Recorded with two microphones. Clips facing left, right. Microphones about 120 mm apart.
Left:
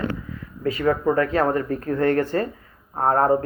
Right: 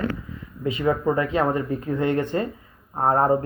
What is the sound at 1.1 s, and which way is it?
Speech, 15° right (ahead or behind).